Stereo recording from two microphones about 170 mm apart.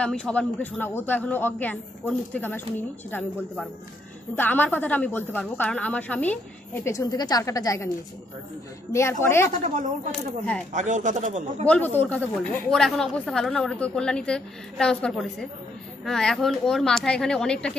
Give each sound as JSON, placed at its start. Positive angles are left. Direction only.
{"t": 0.0, "sound": "a woman's voice", "side_deg": 5}
{"t": 4.4, "sound": "a woman's voice", "side_deg": 10}
{"t": 8.9, "sound": "a woman's voice", "side_deg": 15}
{"t": 10.7, "sound": "speech", "side_deg": -45}
{"t": 11.6, "sound": "a woman's voice", "side_deg": 10}